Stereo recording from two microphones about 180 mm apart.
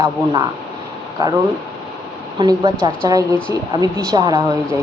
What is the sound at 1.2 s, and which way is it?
Speech, 20° right (ahead or behind).